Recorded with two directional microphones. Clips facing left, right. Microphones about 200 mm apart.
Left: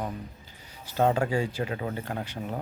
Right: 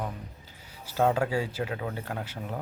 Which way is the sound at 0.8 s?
5° right (ahead or behind).